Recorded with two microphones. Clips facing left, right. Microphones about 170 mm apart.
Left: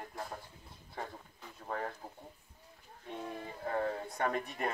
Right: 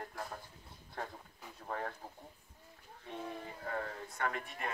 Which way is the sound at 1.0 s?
5° left (ahead or behind).